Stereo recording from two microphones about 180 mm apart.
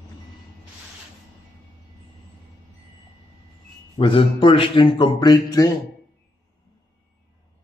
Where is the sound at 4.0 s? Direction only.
30° left (ahead or behind).